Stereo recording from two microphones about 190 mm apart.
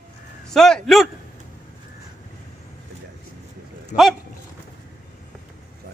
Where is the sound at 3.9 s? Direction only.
50° left (ahead or behind).